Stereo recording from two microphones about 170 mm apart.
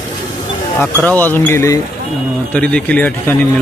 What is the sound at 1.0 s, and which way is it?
A man's voice, 10° left (ahead or behind).